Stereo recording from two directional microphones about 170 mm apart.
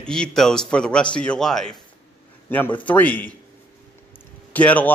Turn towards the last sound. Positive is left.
turn(degrees=10)  # may be behind; listen again after turning